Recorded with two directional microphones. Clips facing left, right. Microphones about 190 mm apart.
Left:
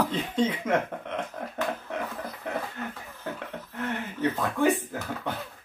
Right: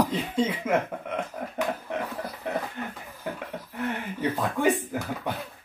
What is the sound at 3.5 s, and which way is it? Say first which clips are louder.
Speech: right 1 dB; 10° right (ahead or behind).